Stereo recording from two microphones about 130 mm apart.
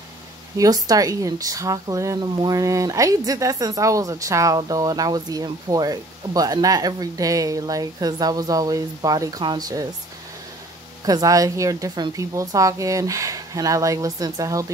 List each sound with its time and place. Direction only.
0.6 s speech: 30° right (ahead or behind)
11.1 s speech: 25° right (ahead or behind)